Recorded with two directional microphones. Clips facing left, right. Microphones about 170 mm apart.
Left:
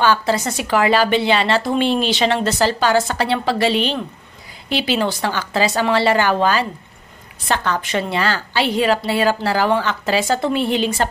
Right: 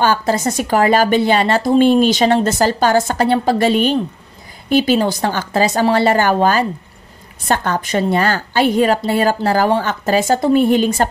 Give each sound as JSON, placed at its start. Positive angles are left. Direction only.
{"t": 0.0, "sound": "a woman's voice", "side_deg": -45}